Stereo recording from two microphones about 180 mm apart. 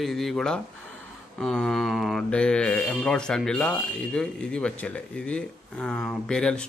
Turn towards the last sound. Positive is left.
turn(degrees=5)  # may be behind; listen again after turning